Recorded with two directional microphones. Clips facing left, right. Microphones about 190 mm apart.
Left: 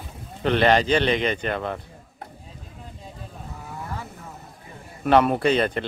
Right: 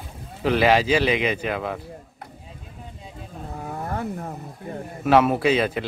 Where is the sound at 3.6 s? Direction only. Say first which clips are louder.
Right 7 dB; 50° right (ahead or behind).